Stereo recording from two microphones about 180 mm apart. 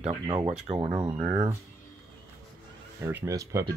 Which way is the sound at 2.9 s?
15° right (ahead or behind).